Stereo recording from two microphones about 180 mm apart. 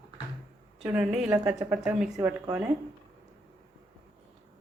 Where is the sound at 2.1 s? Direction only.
15° right (ahead or behind).